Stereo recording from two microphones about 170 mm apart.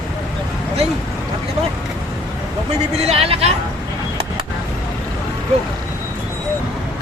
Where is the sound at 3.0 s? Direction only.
35° right (ahead or behind).